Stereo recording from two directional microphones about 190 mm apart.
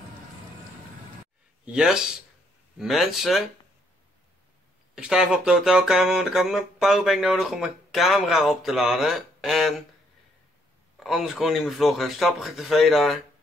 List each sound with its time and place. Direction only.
1.7 s speech: 5° right (ahead or behind)
4.9 s speech: 5° right (ahead or behind)
11.0 s speech: centre (ahead or behind)